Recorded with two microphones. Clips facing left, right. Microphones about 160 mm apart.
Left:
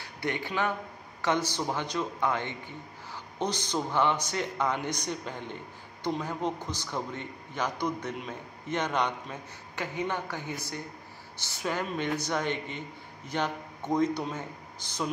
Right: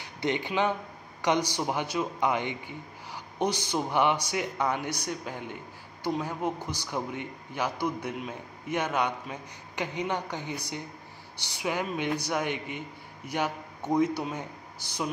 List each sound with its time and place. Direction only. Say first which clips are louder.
0.2 s speech: right 3 dB; 20° right (ahead or behind)